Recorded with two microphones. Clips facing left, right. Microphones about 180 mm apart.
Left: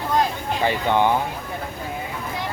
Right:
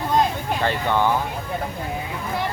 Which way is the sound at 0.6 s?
15° left (ahead or behind).